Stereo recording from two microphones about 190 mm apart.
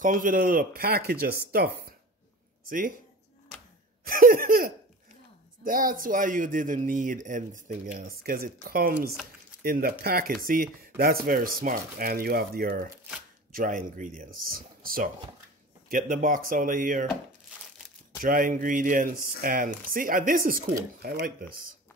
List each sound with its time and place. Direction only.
0.0 s speech: 45° right (ahead or behind)
4.0 s a sound: 50° right (ahead or behind)
5.6 s speech: 45° right (ahead or behind)
18.2 s speech: 45° right (ahead or behind)